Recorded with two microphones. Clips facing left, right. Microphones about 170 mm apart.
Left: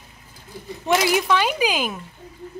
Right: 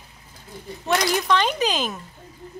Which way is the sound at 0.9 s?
5° left (ahead or behind).